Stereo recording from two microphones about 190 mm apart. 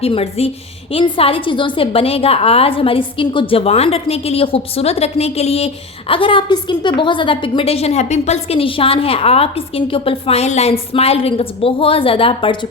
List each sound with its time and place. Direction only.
0.0 s a woman's voice: 30° left (ahead or behind)